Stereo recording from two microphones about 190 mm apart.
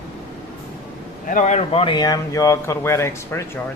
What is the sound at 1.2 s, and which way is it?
Speech, 40° left (ahead or behind).